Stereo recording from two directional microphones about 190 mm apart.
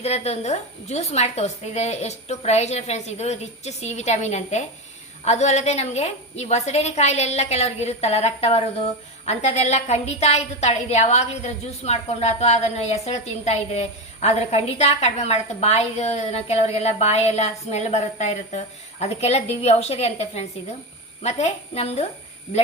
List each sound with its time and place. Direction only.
0.0 s a woman's voice: 35° left (ahead or behind)